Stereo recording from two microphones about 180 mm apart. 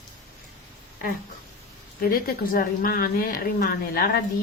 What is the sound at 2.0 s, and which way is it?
A woman's voice, 55° left (ahead or behind).